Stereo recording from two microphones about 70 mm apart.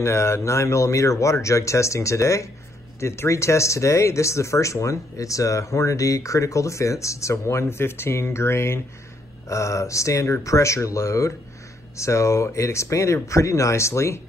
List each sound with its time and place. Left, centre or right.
0.0 s speech: left